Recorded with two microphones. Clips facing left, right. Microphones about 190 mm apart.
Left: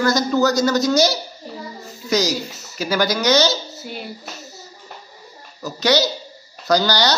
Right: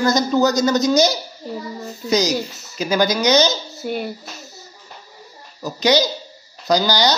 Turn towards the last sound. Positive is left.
turn(degrees=-15)  # may be behind; listen again after turning